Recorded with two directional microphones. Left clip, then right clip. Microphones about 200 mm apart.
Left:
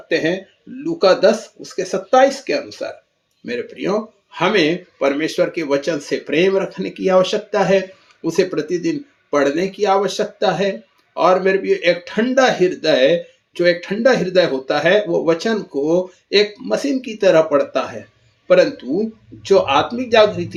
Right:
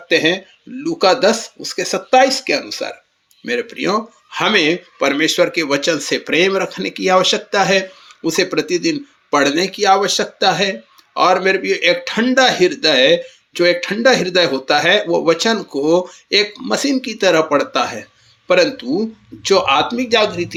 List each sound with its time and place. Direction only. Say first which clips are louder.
0.1 s speech: right 4 dB; 20° right (ahead or behind)